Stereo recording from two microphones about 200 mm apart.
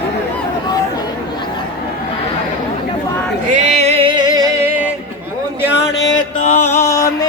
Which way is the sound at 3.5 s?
35° right (ahead or behind).